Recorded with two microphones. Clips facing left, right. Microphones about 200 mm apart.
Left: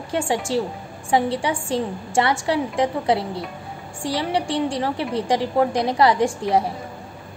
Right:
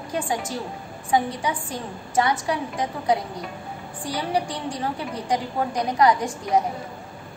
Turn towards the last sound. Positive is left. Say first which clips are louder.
# left 3 dB
turn(degrees=30)  # may be behind; listen again after turning